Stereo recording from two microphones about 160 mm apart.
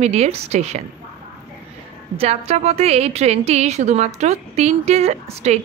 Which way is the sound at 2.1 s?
40° right (ahead or behind).